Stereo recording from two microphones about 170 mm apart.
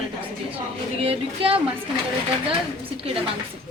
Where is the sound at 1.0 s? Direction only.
35° right (ahead or behind).